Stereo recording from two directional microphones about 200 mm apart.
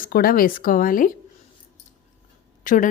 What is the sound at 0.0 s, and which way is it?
Speech, 45° left (ahead or behind).